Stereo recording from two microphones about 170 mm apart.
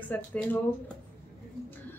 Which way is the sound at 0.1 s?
10° left (ahead or behind).